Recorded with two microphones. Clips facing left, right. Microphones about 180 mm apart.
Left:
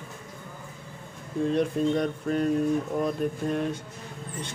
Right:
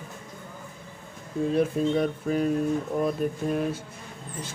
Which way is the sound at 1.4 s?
5° right (ahead or behind).